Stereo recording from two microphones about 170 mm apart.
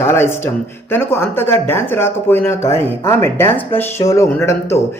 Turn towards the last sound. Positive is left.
turn(degrees=15)  # may be behind; listen again after turning